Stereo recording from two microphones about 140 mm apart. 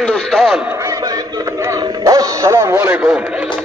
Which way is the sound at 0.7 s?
25° right (ahead or behind).